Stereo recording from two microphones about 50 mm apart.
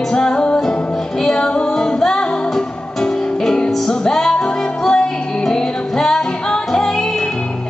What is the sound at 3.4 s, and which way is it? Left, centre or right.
Music, centre.